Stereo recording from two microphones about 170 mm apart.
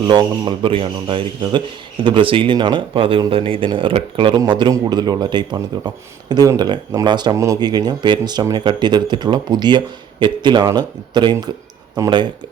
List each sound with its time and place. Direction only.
0.1 s speech: 25° right (ahead or behind)